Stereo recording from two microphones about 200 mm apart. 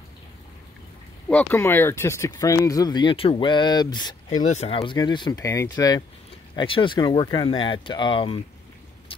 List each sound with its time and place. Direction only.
1.3 s speech: 10° left (ahead or behind)
4.3 s speech: 35° left (ahead or behind)